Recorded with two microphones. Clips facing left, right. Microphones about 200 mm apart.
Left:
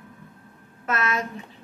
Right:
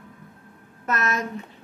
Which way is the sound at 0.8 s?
40° right (ahead or behind).